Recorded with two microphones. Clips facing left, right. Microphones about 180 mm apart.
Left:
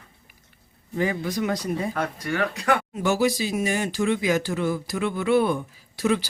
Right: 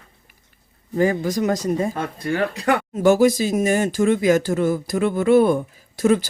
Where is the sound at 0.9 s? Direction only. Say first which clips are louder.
Right 6 dB; 45° right (ahead or behind).